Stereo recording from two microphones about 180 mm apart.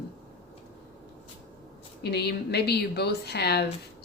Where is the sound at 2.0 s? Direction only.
65° left (ahead or behind).